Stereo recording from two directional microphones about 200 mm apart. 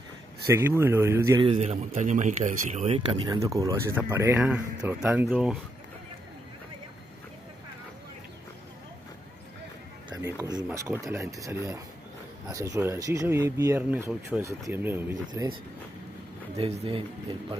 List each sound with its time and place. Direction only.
0.5 s speech: 10° right (ahead or behind)
1.4 s speech: 30° right (ahead or behind); by 5.6 s 5° right (ahead or behind)
10.3 s speech: 15° right (ahead or behind)
16.5 s speech: 25° right (ahead or behind)